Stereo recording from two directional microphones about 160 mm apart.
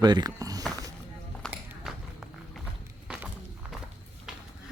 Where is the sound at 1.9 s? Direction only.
Centre (ahead or behind).